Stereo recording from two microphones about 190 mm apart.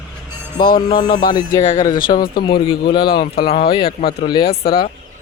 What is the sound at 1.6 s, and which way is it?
Speech, 45° left (ahead or behind).